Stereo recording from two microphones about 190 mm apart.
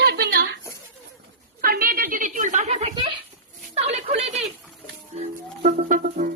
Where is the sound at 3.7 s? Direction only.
35° right (ahead or behind).